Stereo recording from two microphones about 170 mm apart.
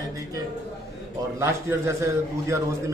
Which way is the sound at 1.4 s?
15° right (ahead or behind).